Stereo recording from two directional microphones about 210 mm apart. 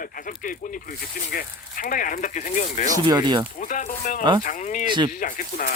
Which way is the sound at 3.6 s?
35° left (ahead or behind).